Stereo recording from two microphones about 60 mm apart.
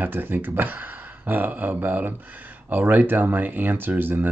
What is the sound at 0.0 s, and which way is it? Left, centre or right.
Speech, right.